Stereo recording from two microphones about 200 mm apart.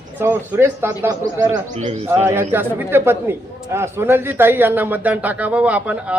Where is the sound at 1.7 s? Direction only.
35° right (ahead or behind).